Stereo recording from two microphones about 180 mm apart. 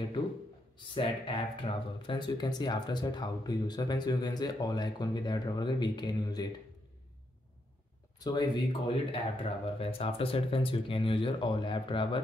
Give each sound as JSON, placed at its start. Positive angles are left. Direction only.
{"t": 0.7, "sound": "speech", "side_deg": 30}
{"t": 8.2, "sound": "speech", "side_deg": 20}